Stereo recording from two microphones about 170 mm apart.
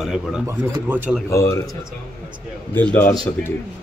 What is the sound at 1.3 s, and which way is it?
Speech, 20° left (ahead or behind).